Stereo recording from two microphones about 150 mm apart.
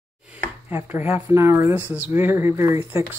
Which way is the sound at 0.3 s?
15° right (ahead or behind).